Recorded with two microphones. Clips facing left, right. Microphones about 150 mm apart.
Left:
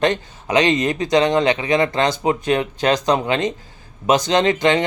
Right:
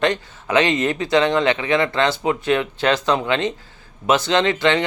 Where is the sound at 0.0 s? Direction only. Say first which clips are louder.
Left 1 dB; 20° left (ahead or behind).